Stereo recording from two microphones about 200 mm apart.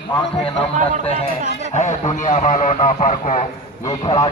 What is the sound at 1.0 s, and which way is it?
A man's voice, 30° left (ahead or behind).